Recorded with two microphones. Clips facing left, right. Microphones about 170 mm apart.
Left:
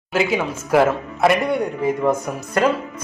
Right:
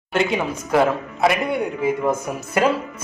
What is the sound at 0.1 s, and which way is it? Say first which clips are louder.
A woman's voice: left 1 dB; 5° left (ahead or behind).